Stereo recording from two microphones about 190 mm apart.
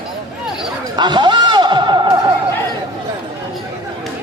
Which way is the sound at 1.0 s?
25° right (ahead or behind).